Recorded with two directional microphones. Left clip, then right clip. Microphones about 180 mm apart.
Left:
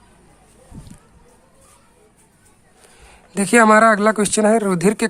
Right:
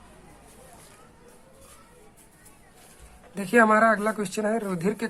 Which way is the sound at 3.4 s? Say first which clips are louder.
Left 7 dB; 45° left (ahead or behind).